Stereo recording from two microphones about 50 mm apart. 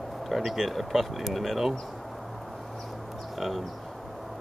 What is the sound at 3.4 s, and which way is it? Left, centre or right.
Speech, centre.